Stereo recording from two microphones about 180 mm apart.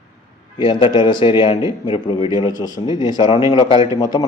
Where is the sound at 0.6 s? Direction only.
25° left (ahead or behind).